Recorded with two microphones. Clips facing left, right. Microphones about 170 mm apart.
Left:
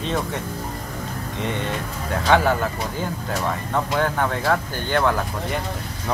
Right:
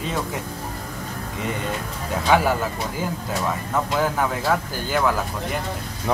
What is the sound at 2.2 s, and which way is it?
A man's voice, 10° right (ahead or behind).